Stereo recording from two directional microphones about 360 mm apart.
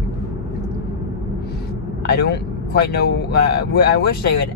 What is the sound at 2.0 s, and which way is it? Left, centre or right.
Speech, left.